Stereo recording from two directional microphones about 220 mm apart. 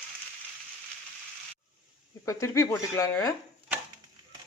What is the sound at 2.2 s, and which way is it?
Speech, 15° left (ahead or behind).